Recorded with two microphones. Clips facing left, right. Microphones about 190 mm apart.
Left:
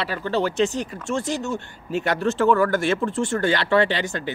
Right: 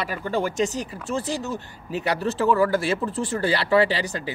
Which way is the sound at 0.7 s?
35° right (ahead or behind).